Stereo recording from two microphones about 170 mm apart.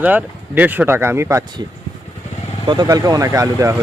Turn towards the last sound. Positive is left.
turn(degrees=-20)  # may be behind; listen again after turning